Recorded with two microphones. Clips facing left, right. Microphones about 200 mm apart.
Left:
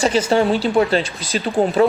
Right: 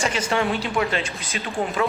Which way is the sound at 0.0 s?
35° left (ahead or behind).